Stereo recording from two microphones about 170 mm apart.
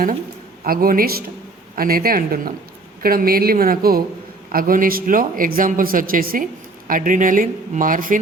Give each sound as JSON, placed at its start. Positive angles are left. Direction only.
{"t": 0.6, "sound": "speech", "side_deg": -60}